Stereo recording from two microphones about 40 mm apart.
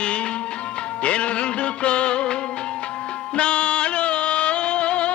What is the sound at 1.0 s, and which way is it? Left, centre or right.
Music, left.